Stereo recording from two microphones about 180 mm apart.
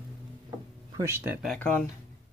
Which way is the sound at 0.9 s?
15° right (ahead or behind).